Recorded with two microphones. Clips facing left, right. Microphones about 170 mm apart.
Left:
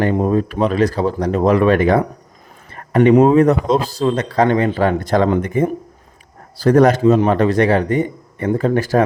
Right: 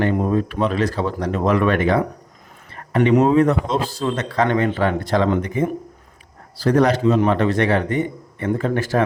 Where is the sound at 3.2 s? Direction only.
40° left (ahead or behind).